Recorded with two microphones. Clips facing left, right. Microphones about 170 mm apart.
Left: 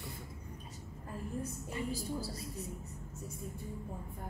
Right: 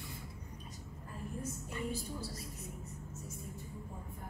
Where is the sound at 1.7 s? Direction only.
35° left (ahead or behind).